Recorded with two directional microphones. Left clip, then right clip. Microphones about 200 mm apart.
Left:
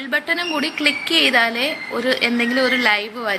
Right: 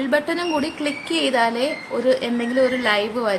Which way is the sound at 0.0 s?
15° right (ahead or behind).